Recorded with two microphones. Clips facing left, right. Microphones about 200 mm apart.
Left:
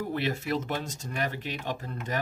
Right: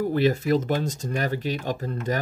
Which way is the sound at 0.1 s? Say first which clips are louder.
Right 8 dB; 35° right (ahead or behind).